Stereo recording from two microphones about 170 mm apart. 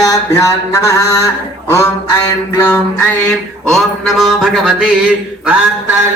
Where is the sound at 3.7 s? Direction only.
Centre (ahead or behind).